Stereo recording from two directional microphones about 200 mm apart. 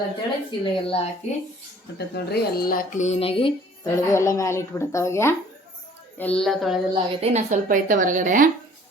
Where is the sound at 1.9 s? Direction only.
55° left (ahead or behind); by 3.5 s 30° left (ahead or behind).